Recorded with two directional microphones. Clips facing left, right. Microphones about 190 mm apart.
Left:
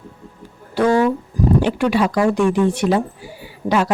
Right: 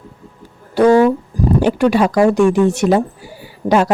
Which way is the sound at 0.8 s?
40° right (ahead or behind).